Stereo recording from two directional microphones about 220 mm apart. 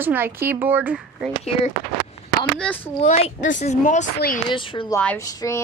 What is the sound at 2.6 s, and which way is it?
Speech, 5° left (ahead or behind).